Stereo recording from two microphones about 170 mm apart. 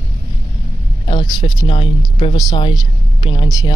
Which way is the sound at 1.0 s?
30° left (ahead or behind).